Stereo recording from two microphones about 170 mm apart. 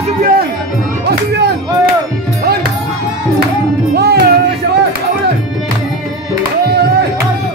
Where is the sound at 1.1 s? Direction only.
70° right (ahead or behind).